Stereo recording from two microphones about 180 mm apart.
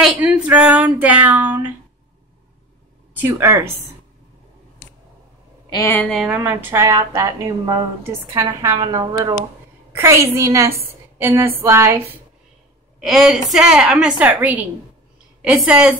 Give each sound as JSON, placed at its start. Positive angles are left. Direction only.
{"t": 0.0, "sound": "a woman's voice", "side_deg": -5}
{"t": 3.2, "sound": "a woman's voice", "side_deg": -15}
{"t": 5.7, "sound": "a woman's voice", "side_deg": 15}
{"t": 6.0, "sound": "a woman's voice", "side_deg": 0}
{"t": 6.3, "sound": "a woman's voice", "side_deg": -10}
{"t": 13.0, "sound": "a woman's voice", "side_deg": 0}